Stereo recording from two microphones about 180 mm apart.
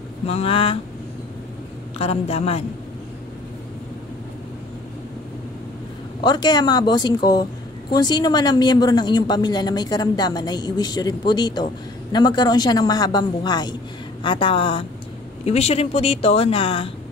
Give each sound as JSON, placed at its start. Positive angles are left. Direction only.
{"t": 0.3, "sound": "a woman's voice", "side_deg": 35}
{"t": 2.0, "sound": "a woman's voice", "side_deg": 35}
{"t": 6.2, "sound": "a woman's voice", "side_deg": 25}